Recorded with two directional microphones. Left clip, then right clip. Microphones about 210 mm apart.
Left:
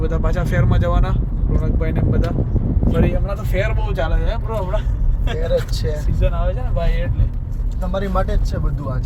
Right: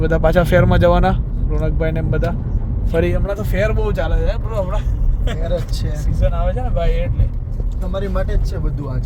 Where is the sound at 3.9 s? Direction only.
5° right (ahead or behind).